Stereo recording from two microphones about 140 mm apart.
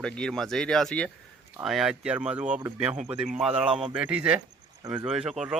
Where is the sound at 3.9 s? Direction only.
10° right (ahead or behind).